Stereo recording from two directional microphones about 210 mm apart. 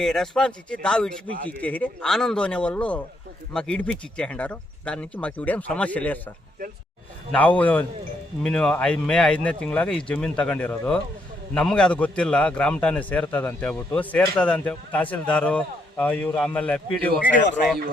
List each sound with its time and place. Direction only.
0.0 s a man's voice: centre (ahead or behind)
7.3 s a man's voice: 5° left (ahead or behind)